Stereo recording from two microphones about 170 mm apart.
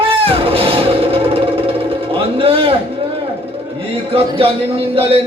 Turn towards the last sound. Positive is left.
turn(degrees=-35)  # may be behind; listen again after turning